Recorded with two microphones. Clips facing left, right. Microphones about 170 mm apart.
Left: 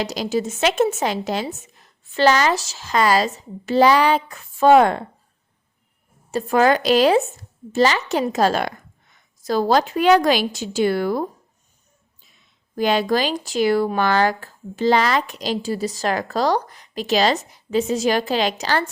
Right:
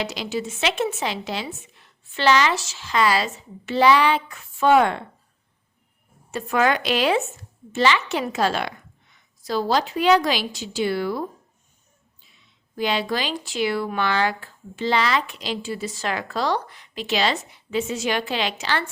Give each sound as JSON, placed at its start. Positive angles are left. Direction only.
{"t": 0.0, "sound": "speech", "side_deg": 40}
{"t": 6.3, "sound": "a woman's voice", "side_deg": 35}
{"t": 12.7, "sound": "speech", "side_deg": 45}